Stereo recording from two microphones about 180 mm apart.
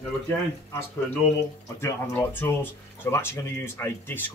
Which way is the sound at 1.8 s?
10° left (ahead or behind).